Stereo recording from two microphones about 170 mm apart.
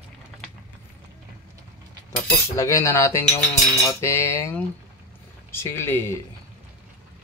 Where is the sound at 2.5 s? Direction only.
20° left (ahead or behind).